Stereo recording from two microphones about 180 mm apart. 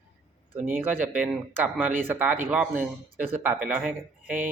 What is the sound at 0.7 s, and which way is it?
Speech, 10° right (ahead or behind).